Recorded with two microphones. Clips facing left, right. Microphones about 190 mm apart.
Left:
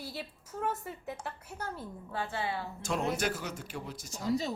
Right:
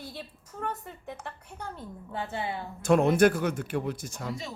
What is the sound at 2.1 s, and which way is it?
Speech, 20° right (ahead or behind).